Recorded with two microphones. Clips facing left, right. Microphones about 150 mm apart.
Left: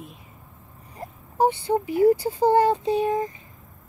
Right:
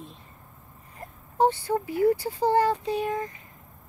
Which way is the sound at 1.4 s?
20° left (ahead or behind).